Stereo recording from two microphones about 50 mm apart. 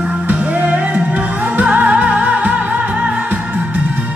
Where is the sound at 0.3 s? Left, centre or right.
Right.